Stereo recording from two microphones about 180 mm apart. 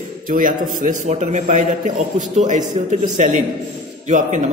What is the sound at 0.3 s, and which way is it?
A man's voice, 50° right (ahead or behind).